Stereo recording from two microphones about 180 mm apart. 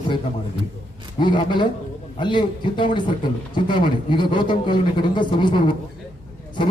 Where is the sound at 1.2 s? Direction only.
25° left (ahead or behind).